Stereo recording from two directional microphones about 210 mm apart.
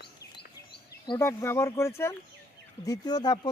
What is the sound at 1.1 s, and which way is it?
A man's voice, 10° left (ahead or behind).